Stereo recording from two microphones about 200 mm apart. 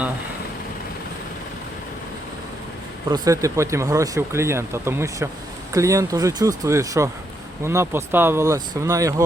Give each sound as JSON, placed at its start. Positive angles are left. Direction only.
{"t": 3.1, "sound": "speech", "side_deg": -15}